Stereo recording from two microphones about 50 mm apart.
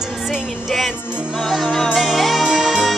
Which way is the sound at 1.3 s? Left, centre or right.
Centre.